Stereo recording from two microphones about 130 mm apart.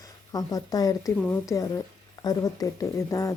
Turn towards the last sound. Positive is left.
turn(degrees=25)  # may be behind; listen again after turning